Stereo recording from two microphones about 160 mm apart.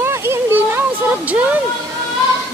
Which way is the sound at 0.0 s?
15° right (ahead or behind).